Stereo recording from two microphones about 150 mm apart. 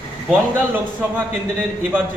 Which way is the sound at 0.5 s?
10° right (ahead or behind).